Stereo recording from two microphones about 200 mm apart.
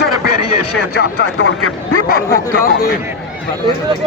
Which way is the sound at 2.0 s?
50° left (ahead or behind).